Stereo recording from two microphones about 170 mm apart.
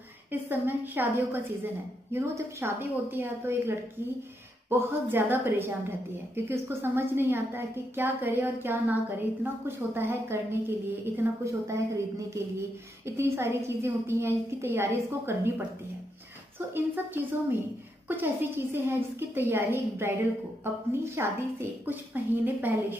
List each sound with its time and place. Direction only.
0.3 s a woman's voice: 10° right (ahead or behind)